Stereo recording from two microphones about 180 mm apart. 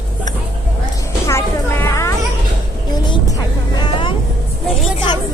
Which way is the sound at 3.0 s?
25° left (ahead or behind).